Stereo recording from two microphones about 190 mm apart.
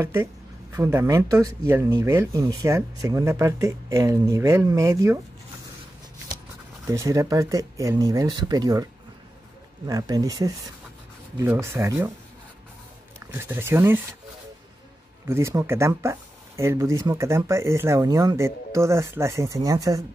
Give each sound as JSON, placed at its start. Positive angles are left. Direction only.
{"t": 0.0, "sound": "speech", "side_deg": -15}
{"t": 6.9, "sound": "speech", "side_deg": -15}
{"t": 9.8, "sound": "speech", "side_deg": -20}
{"t": 13.3, "sound": "speech", "side_deg": -10}
{"t": 15.2, "sound": "speech", "side_deg": -15}